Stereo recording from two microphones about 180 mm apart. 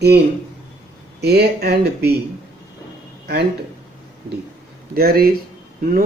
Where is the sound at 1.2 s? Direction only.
60° right (ahead or behind).